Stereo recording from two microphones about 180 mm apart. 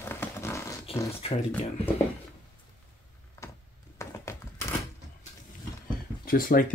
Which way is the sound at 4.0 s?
15° left (ahead or behind).